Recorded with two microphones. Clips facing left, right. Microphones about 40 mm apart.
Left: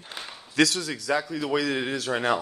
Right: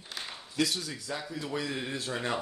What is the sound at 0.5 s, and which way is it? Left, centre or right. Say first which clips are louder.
Speech: left 8 dB; left.